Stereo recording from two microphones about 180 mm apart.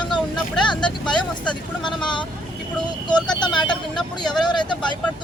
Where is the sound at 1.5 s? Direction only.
25° left (ahead or behind).